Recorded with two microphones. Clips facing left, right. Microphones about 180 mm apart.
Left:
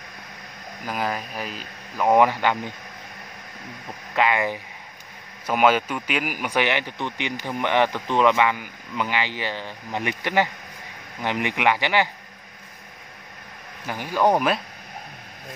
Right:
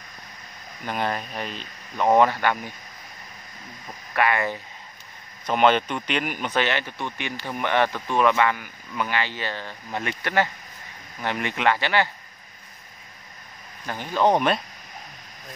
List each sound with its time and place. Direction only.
0.8 s speech: 5° left (ahead or behind)
4.1 s speech: 15° left (ahead or behind)
13.8 s speech: 10° left (ahead or behind)